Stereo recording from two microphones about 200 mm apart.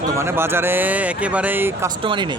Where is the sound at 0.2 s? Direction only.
10° right (ahead or behind).